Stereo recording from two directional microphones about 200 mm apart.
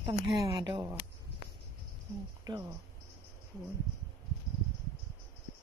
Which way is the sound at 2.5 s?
20° right (ahead or behind).